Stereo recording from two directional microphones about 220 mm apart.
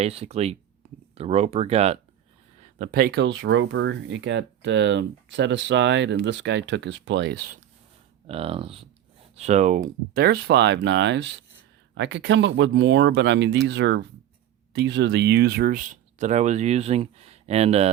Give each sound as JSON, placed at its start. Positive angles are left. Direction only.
{"t": 0.0, "sound": "speech", "side_deg": -30}
{"t": 2.6, "sound": "speech", "side_deg": -40}
{"t": 8.3, "sound": "speech", "side_deg": -25}